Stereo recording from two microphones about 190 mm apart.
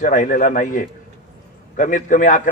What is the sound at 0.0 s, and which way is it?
A man's voice, 45° left (ahead or behind).